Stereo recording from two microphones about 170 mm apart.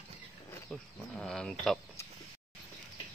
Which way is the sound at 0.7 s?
5° left (ahead or behind).